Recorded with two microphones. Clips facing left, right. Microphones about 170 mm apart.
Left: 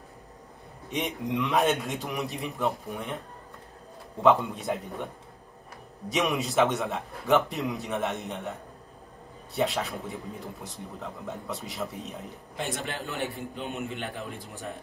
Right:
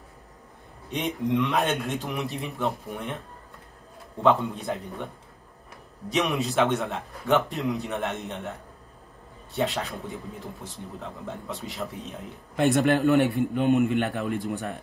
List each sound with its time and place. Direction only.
0.8 s a man's voice: centre (ahead or behind)
4.2 s a man's voice: centre (ahead or behind)
6.0 s a man's voice: centre (ahead or behind)
11.2 s a man's voice: centre (ahead or behind)
12.5 s a man's voice: 65° right (ahead or behind)